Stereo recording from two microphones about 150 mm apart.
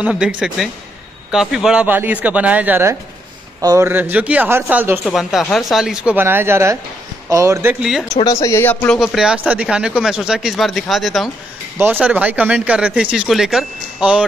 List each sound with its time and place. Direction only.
0.0 s speech: 5° right (ahead or behind)
5.1 s speech: centre (ahead or behind); by 7.7 s 20° right (ahead or behind)
7.8 s speech: 5° right (ahead or behind)
8.2 s speech: 20° left (ahead or behind)
9.0 s speech: centre (ahead or behind)
11.8 s speech: 10° right (ahead or behind)